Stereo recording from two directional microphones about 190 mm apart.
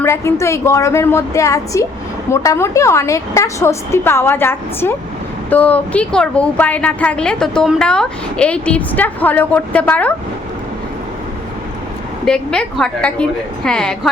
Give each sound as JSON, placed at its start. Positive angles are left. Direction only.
{"t": 0.0, "sound": "a woman's voice", "side_deg": 15}
{"t": 12.2, "sound": "a woman's voice", "side_deg": 5}